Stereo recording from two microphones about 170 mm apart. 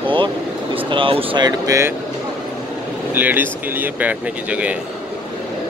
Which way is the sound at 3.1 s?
10° right (ahead or behind).